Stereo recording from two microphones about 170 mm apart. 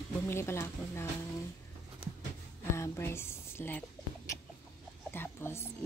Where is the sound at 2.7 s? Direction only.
15° left (ahead or behind).